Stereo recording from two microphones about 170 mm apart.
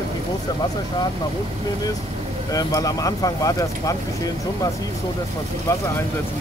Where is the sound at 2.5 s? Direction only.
20° left (ahead or behind).